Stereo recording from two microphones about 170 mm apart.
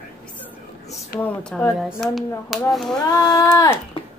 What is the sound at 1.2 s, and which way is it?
A woman's voice, 10° left (ahead or behind).